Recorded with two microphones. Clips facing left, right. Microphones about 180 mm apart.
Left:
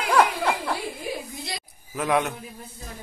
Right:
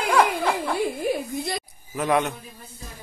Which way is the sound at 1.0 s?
50° right (ahead or behind).